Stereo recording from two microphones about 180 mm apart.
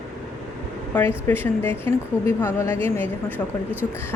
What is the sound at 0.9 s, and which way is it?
A woman's voice, 10° left (ahead or behind).